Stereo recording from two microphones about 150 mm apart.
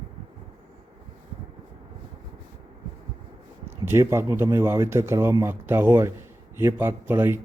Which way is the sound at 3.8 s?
20° right (ahead or behind).